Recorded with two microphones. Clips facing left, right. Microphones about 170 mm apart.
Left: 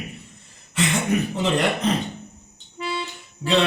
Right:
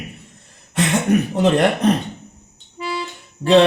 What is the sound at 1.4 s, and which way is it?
Speech, 55° right (ahead or behind).